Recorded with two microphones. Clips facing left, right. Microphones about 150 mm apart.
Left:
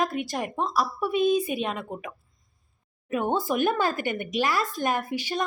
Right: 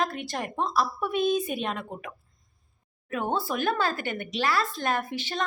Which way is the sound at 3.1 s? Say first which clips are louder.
Left 3 dB; 15° left (ahead or behind).